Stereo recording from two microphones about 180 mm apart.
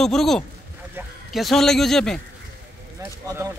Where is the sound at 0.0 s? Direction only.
Centre (ahead or behind).